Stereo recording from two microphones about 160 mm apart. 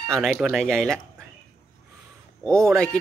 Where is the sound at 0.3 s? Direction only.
5° right (ahead or behind).